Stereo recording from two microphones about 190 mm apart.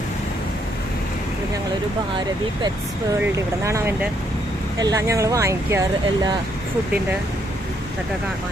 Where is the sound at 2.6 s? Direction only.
15° right (ahead or behind).